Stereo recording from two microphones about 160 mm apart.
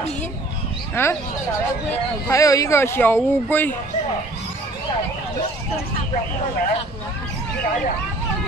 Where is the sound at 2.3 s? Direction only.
20° left (ahead or behind).